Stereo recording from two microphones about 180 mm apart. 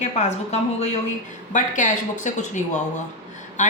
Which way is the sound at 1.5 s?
45° left (ahead or behind).